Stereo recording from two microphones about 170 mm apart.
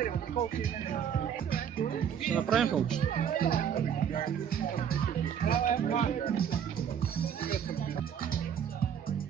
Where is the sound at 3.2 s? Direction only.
55° left (ahead or behind).